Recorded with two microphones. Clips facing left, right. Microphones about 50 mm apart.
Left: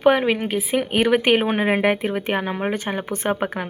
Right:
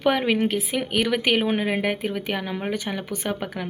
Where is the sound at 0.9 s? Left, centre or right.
Left.